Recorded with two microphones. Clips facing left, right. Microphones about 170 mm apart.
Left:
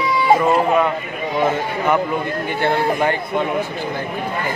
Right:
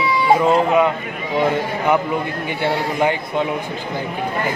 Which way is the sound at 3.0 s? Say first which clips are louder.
Even; 15° right (ahead or behind).